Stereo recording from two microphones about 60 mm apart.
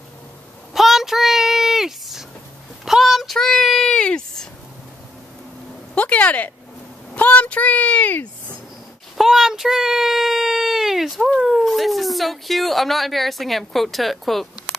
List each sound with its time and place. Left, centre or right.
0.7 s a sound: centre
5.9 s a child's voice: left
9.2 s a child's voice: centre